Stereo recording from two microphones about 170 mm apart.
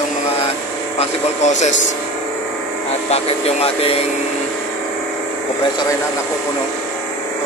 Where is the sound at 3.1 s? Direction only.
35° left (ahead or behind).